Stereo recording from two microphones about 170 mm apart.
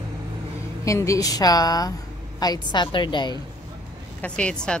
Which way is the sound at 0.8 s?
20° left (ahead or behind).